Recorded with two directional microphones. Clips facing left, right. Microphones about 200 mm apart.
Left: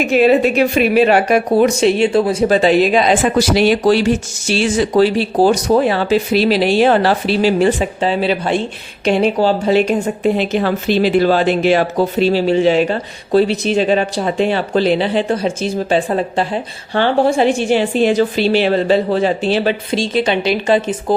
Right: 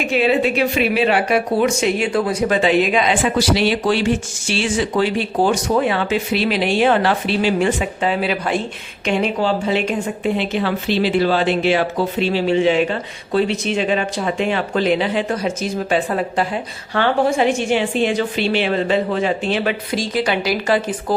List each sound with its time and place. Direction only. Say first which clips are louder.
0.1 s speech: left 5 dB; 45° left (ahead or behind); by 21.2 s 25° left (ahead or behind)